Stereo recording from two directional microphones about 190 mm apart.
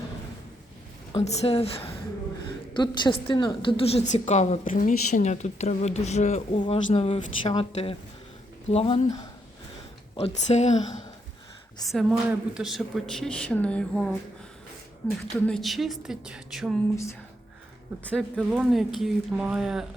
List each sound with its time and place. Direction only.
1.1 s a woman's voice: 35° left (ahead or behind)
10.2 s a woman's voice: 35° left (ahead or behind)
11.9 s speech: centre (ahead or behind)
15.3 s speech: 5° left (ahead or behind)
18.1 s speech: centre (ahead or behind)